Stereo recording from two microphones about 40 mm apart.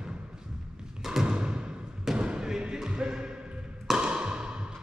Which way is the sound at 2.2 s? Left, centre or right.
Right.